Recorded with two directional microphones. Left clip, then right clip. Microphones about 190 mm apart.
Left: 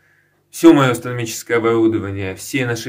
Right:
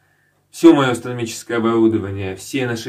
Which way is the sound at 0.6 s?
20° left (ahead or behind).